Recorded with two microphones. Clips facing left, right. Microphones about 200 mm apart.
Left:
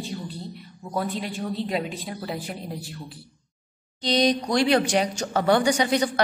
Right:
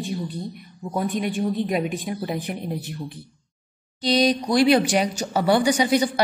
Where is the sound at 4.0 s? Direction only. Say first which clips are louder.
Right 2 dB; 10° right (ahead or behind).